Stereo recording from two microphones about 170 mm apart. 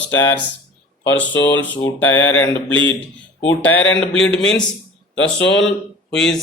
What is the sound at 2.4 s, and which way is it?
Mantra, 90° left.